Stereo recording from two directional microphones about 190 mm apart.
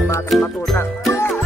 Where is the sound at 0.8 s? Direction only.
15° left (ahead or behind).